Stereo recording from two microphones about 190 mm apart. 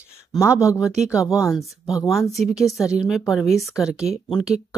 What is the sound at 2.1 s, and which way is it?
A woman's voice, centre (ahead or behind).